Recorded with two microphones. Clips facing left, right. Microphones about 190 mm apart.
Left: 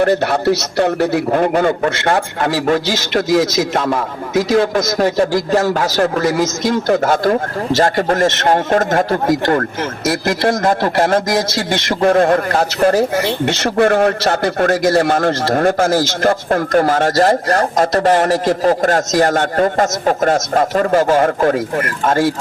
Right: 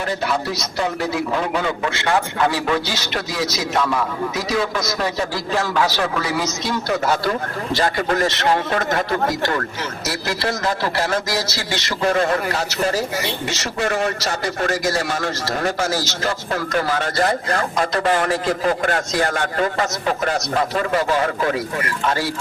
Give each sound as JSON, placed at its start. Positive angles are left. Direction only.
{"t": 0.0, "sound": "a man's voice", "side_deg": 65}